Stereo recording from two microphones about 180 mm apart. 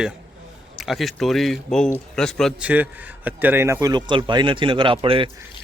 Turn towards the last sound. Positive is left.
turn(degrees=-30)  # may be behind; listen again after turning